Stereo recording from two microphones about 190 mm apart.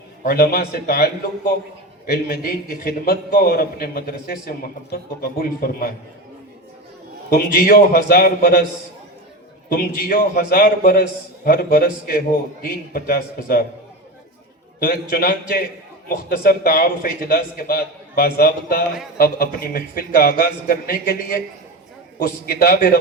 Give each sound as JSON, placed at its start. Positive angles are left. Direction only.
{"t": 0.2, "sound": "a man's voice", "side_deg": 50}
{"t": 7.3, "sound": "a man's voice", "side_deg": 50}
{"t": 9.7, "sound": "a man's voice", "side_deg": 50}
{"t": 14.8, "sound": "a man's voice", "side_deg": 50}